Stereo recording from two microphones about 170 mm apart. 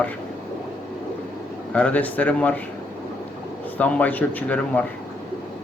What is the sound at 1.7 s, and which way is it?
Speech, 10° left (ahead or behind).